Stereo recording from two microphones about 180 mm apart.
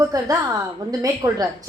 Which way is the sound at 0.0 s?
20° right (ahead or behind).